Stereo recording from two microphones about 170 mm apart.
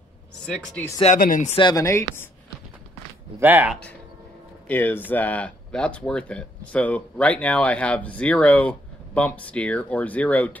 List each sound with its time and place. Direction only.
1.0 s speech: 50° left (ahead or behind)
1.5 s speech: 25° left (ahead or behind)
3.3 s speech: 10° right (ahead or behind)
4.6 s speech: 10° left (ahead or behind)